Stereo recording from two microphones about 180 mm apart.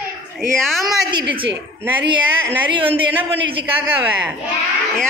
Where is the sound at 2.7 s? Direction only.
30° right (ahead or behind).